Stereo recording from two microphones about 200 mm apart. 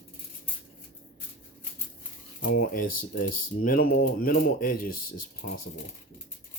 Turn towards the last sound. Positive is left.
turn(degrees=45)  # may be behind; listen again after turning